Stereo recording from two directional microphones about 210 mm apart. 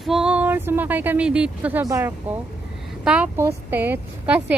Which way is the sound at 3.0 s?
5° right (ahead or behind).